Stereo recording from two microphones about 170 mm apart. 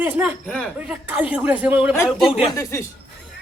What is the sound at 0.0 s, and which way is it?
Speech, 10° right (ahead or behind).